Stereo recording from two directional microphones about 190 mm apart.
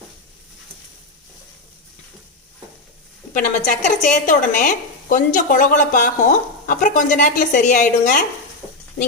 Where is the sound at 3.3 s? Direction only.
40° left (ahead or behind).